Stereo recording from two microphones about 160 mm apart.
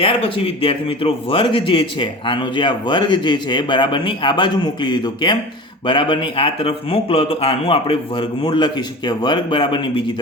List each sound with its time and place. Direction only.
0.0 s speech: 35° left (ahead or behind)